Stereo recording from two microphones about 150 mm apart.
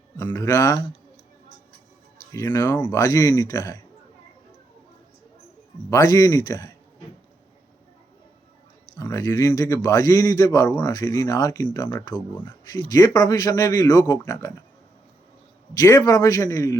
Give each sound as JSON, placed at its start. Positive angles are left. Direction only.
{"t": 0.2, "sound": "a man's voice", "side_deg": 20}
{"t": 2.3, "sound": "a man's voice", "side_deg": 20}
{"t": 5.9, "sound": "a man's voice", "side_deg": 20}
{"t": 9.0, "sound": "a man's voice", "side_deg": 25}
{"t": 15.7, "sound": "a man's voice", "side_deg": 25}